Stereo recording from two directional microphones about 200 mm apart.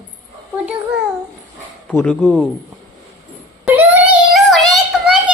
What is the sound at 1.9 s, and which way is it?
Speech, 5° left (ahead or behind).